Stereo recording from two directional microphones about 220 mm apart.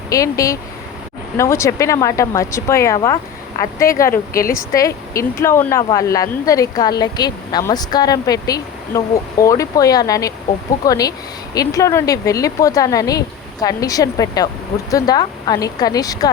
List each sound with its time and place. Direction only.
0.1 s speech: 15° left (ahead or behind)